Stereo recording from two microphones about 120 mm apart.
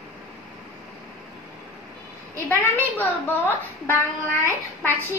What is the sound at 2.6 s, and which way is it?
A woman's voice, 20° left (ahead or behind).